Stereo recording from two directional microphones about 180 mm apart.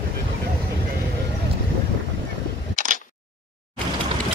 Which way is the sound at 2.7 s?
45° right (ahead or behind).